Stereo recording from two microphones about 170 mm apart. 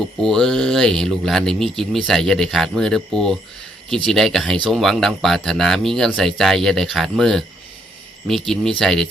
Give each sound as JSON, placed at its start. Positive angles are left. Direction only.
{"t": 0.2, "sound": "speech", "side_deg": 5}